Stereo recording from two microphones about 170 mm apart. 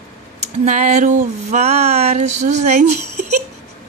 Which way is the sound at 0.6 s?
45° right (ahead or behind).